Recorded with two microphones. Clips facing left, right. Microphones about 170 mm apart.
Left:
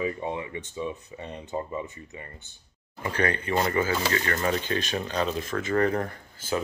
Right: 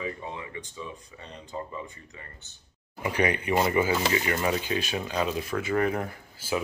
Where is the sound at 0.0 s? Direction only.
25° left (ahead or behind).